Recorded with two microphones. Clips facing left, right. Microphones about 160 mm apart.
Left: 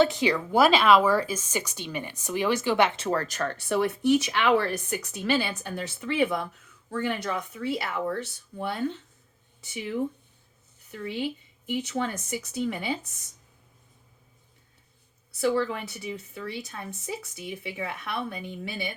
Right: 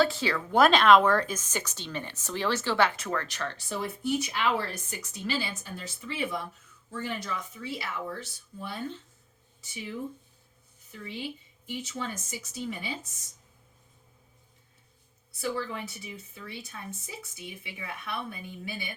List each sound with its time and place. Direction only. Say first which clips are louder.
0.0 s a woman's voice: left 4 dB; 15° left (ahead or behind); by 9.0 s 65° left (ahead or behind)
10.8 s a woman's voice: left 7 dB; 65° left (ahead or behind)
15.3 s a woman's voice: left 7 dB; 70° left (ahead or behind)
17.6 s a woman's voice: left 8 dB; 80° left